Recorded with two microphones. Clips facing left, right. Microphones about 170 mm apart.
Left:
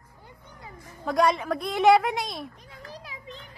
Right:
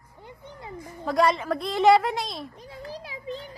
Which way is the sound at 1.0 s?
Centre (ahead or behind).